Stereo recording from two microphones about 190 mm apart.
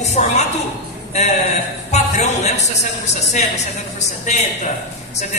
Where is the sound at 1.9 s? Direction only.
35° left (ahead or behind).